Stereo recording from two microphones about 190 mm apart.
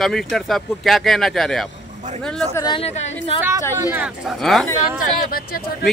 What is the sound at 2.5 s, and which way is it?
Speech, 20° left (ahead or behind).